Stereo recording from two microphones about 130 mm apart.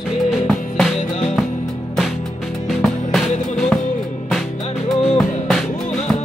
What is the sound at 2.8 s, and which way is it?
Music, centre (ahead or behind).